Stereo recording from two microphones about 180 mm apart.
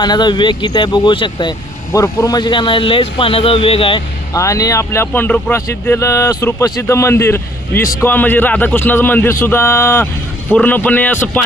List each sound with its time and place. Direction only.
0.0 s speech: 25° left (ahead or behind)
4.4 s speech: 20° left (ahead or behind)